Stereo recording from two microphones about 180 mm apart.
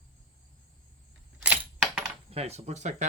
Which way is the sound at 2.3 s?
35° right (ahead or behind).